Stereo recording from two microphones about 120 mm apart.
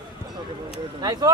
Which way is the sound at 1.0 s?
35° right (ahead or behind).